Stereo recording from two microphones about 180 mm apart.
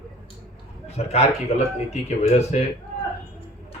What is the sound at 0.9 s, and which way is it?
Speech, 35° left (ahead or behind).